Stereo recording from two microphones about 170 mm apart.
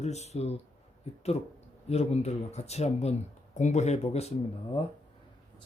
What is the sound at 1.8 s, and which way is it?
Speech, 40° left (ahead or behind).